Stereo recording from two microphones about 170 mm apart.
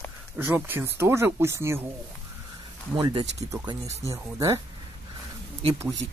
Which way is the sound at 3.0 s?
25° right (ahead or behind).